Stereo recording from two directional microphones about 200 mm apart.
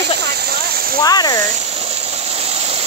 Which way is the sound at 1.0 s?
20° left (ahead or behind).